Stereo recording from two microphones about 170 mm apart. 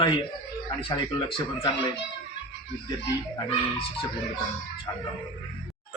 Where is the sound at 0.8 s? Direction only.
30° left (ahead or behind).